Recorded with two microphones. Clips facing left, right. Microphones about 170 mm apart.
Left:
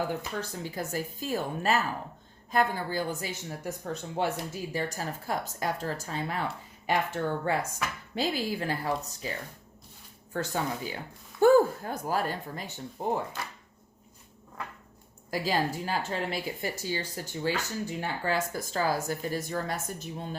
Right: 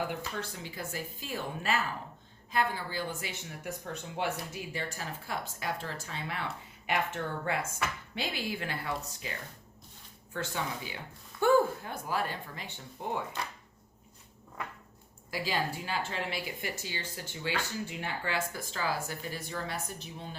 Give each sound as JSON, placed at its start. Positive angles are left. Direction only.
{"t": 0.1, "sound": "a woman's voice", "side_deg": 40}
{"t": 10.3, "sound": "a woman's voice", "side_deg": 40}
{"t": 15.3, "sound": "a woman's voice", "side_deg": 40}